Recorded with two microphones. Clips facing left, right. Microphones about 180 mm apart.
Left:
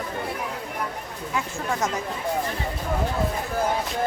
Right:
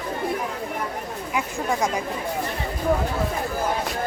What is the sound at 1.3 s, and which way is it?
Speech, 15° right (ahead or behind).